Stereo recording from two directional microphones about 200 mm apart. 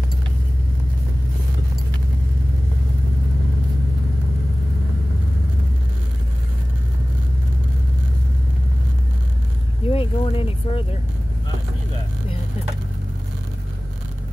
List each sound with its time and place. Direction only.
9.8 s speech: 30° left (ahead or behind)